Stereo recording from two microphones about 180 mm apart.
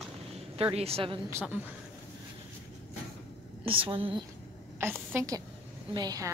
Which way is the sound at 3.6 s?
30° right (ahead or behind).